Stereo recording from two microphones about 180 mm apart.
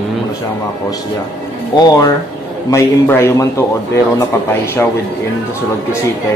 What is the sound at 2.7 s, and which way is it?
Mantra, 15° left (ahead or behind).